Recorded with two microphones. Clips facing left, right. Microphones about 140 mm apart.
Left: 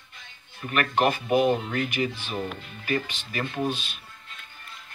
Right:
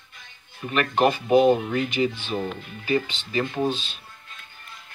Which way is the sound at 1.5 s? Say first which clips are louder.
Right 4 dB; 20° right (ahead or behind).